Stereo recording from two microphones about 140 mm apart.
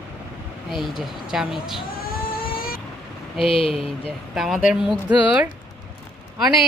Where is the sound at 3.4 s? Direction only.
40° left (ahead or behind).